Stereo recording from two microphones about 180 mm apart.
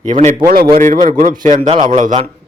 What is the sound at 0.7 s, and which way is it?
Speech, 45° right (ahead or behind).